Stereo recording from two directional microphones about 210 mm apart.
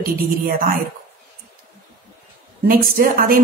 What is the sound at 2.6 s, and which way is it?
Speech, 45° right (ahead or behind).